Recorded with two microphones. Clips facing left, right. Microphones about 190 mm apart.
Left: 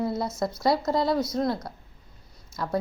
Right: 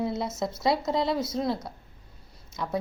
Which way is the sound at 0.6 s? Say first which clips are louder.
Left 2 dB; centre (ahead or behind).